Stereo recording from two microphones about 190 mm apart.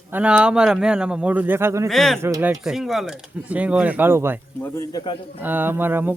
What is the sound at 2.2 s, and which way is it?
Speech, 15° right (ahead or behind).